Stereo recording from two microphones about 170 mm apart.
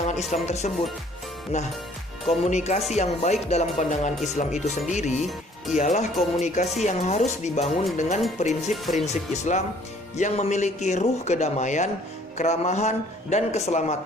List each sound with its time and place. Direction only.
0.0 s music: 40° left (ahead or behind)
0.4 s a man's voice: 40° left (ahead or behind)
8.7 s speech: centre (ahead or behind)
9.3 s a man's voice: 40° left (ahead or behind)